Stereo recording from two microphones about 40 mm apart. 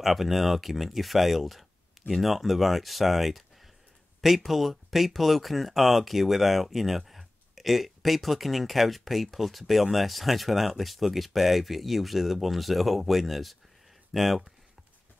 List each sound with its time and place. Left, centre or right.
0.0 s speech: centre